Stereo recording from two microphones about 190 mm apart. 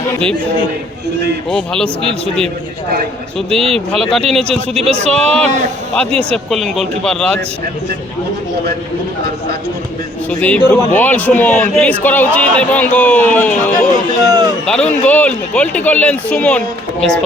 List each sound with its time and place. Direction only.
1.5 s speech: 5° left (ahead or behind)
3.5 s speech: 30° right (ahead or behind)
3.9 s speech: centre (ahead or behind)
4.7 s speech: 35° right (ahead or behind)
5.0 s speech: 5° left (ahead or behind)
6.1 s speech: 30° right (ahead or behind)
6.3 s speech: centre (ahead or behind)
10.2 s a man's voice: 10° left (ahead or behind)
14.3 s speech: 20° right (ahead or behind)
14.7 s a man's voice: 5° left (ahead or behind)